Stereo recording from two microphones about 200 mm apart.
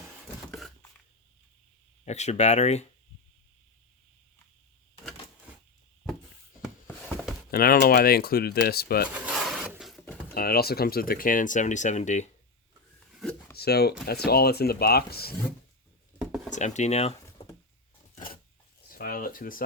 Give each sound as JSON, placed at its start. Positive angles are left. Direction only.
{"t": 2.0, "sound": "speech", "side_deg": 35}
{"t": 7.5, "sound": "speech", "side_deg": 50}
{"t": 9.0, "sound": "a sound", "side_deg": -5}
{"t": 10.3, "sound": "speech", "side_deg": 50}
{"t": 13.6, "sound": "speech", "side_deg": 50}
{"t": 16.5, "sound": "speech", "side_deg": 35}
{"t": 18.1, "sound": "a sound", "side_deg": 45}